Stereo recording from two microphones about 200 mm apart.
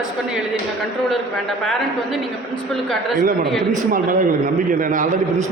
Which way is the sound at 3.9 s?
40° right (ahead or behind).